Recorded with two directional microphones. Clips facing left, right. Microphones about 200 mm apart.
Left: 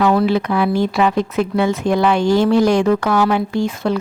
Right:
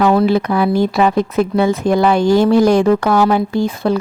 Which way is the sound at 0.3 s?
40° right (ahead or behind).